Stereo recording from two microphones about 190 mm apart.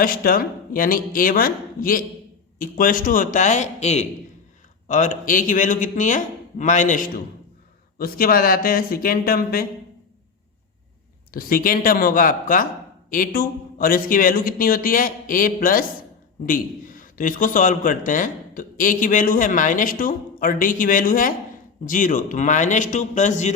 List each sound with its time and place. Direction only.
0.0 s a man's voice: 50° left (ahead or behind)
11.3 s a man's voice: 50° left (ahead or behind)